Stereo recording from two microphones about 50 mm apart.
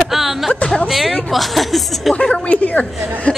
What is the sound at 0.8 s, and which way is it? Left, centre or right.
A woman's voice, centre.